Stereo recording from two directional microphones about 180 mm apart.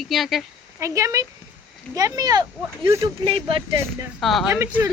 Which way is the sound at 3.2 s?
30° right (ahead or behind).